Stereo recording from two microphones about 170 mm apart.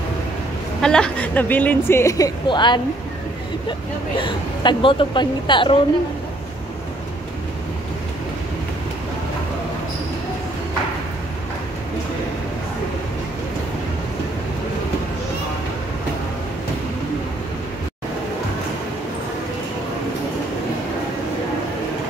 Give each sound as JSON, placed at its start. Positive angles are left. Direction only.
{"t": 0.7, "sound": "a woman's voice", "side_deg": 5}
{"t": 4.2, "sound": "a woman's voice", "side_deg": 30}